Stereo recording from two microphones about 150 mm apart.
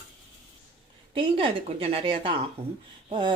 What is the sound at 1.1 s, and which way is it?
Speech, 40° right (ahead or behind).